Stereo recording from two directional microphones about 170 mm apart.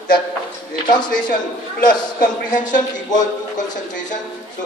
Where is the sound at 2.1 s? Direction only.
50° left (ahead or behind).